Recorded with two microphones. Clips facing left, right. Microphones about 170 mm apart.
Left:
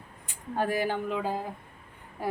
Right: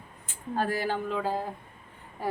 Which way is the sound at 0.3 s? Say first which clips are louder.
Even; 15° left (ahead or behind).